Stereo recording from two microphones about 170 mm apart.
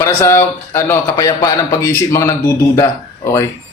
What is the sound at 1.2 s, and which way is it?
A man's voice, 25° left (ahead or behind).